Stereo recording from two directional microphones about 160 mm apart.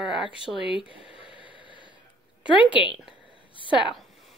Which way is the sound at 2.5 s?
30° left (ahead or behind).